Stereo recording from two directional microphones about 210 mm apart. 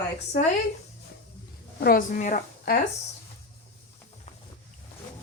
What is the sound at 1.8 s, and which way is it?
A woman's voice, 45° left (ahead or behind).